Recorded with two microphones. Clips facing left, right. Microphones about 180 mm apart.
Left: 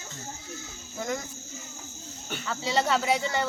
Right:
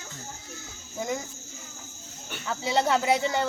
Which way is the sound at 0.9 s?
10° right (ahead or behind).